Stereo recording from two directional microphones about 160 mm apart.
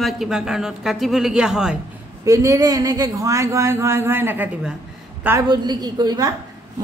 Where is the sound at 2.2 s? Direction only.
20° right (ahead or behind).